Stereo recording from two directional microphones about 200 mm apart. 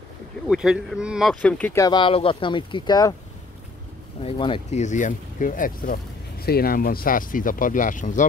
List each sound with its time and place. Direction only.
0.5 s speech: 5° right (ahead or behind); by 3.2 s 20° left (ahead or behind)
4.2 s speech: 25° left (ahead or behind)